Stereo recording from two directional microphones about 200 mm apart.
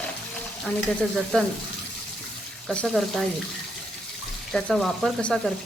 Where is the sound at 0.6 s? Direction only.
5° left (ahead or behind).